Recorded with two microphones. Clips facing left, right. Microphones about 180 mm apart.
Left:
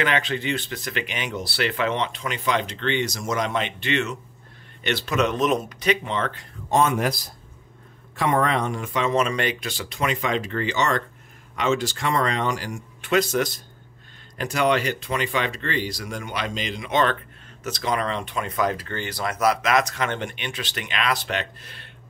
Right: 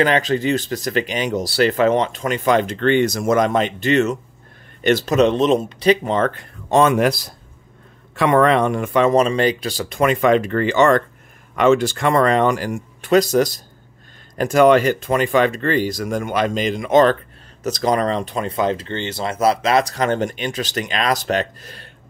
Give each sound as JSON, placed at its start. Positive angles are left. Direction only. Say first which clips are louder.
{"t": 0.0, "sound": "speech", "louder": "right 7 dB", "side_deg": -40}
{"t": 6.7, "sound": "speech", "louder": "right 6 dB", "side_deg": -70}
{"t": 9.1, "sound": "speech", "louder": "right 7 dB", "side_deg": -35}